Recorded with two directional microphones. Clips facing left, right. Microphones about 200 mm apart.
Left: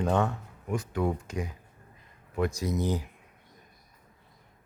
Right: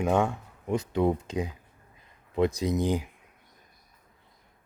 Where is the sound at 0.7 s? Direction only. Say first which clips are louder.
Right 4 dB; 25° right (ahead or behind).